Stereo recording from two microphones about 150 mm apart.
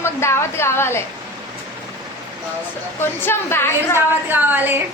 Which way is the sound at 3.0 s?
15° left (ahead or behind).